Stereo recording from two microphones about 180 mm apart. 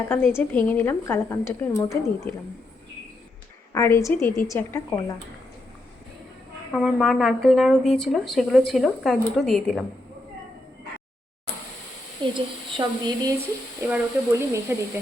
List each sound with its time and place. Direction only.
0.1 s a woman's voice: 10° left (ahead or behind)
3.7 s a woman's voice: 15° left (ahead or behind)
6.7 s speech: centre (ahead or behind)
12.2 s a woman's voice: 25° right (ahead or behind)
13.8 s speech: 10° right (ahead or behind)